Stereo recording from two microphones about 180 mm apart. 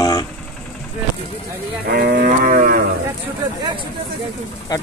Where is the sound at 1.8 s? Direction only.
55° right (ahead or behind).